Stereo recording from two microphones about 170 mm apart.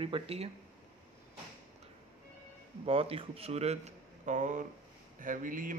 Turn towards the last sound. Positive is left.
turn(degrees=-55)  # may be behind; listen again after turning